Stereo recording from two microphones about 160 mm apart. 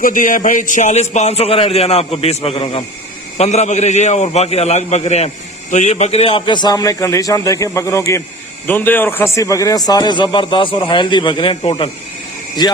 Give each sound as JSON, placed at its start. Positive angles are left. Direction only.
{"t": 0.0, "sound": "a man's voice", "side_deg": 55}